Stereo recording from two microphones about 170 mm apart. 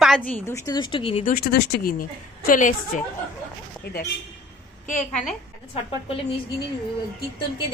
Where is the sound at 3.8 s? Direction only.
70° left (ahead or behind).